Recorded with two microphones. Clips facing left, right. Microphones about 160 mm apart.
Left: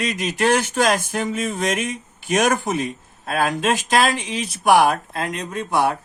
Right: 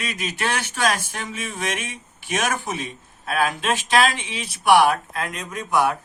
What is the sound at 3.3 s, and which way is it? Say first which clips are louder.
Speech: left 2 dB; 40° left (ahead or behind).